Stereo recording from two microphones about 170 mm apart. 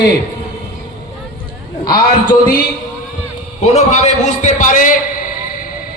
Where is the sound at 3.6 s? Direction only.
40° left (ahead or behind).